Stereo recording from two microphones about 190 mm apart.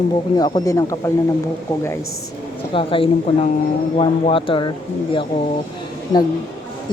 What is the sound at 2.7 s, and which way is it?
Speech, 25° left (ahead or behind).